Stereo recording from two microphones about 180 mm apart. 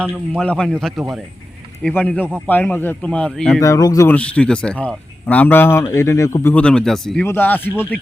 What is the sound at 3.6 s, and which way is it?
A man's voice, 20° left (ahead or behind).